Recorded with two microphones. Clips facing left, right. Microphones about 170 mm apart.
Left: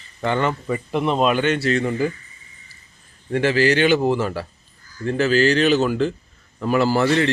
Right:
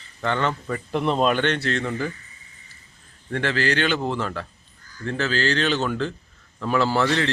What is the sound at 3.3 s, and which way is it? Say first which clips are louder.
Speech: left 6 dB; 15° left (ahead or behind).